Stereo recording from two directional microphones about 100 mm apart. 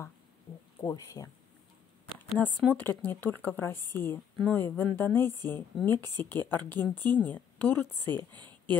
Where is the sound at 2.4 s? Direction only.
20° left (ahead or behind).